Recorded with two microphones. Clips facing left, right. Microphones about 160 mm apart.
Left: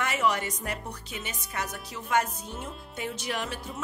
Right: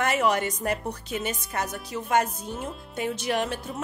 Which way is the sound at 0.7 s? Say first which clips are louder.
Right 7 dB; 45° right (ahead or behind).